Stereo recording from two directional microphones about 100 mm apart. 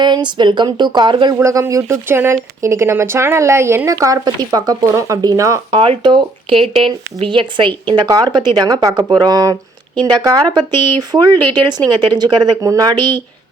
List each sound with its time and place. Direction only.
0.0 s speech: 50° right (ahead or behind)
1.4 s speech: 30° right (ahead or behind)
5.7 s speech: 60° right (ahead or behind)
7.9 s speech: 45° right (ahead or behind)